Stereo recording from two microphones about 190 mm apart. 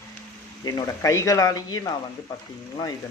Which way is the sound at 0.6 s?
15° left (ahead or behind).